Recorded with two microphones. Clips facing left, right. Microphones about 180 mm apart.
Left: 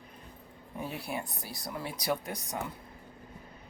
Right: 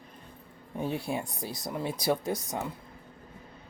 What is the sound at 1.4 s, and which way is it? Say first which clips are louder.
Speech: right 5 dB; 20° right (ahead or behind).